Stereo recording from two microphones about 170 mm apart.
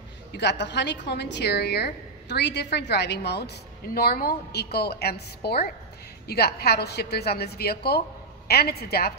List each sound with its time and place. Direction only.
0.4 s a woman's voice: 90° left; by 9.1 s 70° left (ahead or behind)